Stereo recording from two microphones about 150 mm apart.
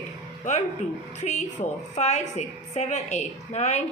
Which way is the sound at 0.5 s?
55° left (ahead or behind).